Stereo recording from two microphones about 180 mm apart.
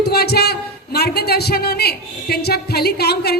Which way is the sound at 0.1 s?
60° left (ahead or behind).